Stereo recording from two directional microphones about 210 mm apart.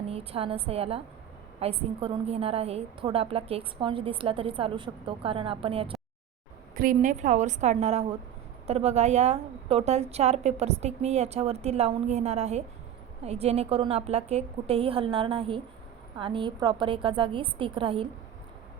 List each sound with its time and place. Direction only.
0.1 s a woman's voice: 25° right (ahead or behind)
6.7 s a woman's voice: 40° right (ahead or behind)